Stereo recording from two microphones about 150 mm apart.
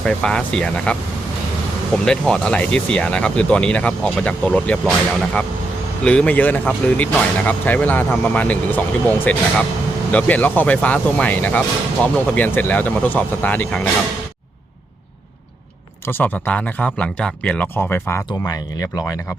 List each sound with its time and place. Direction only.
0.0 s speech: 5° left (ahead or behind)
2.0 s speech: 5° left (ahead or behind)
16.0 s speech: 15° left (ahead or behind)
18.3 s speech: 25° left (ahead or behind)